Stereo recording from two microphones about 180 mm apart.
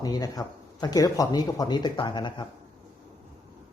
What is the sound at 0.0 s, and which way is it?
Speech, 20° left (ahead or behind).